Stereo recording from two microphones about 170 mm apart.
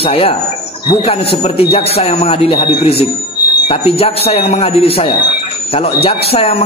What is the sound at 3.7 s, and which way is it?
Speech, 35° left (ahead or behind).